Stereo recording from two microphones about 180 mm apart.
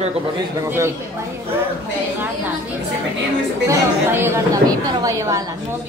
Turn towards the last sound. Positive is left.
turn(degrees=-20)  # may be behind; listen again after turning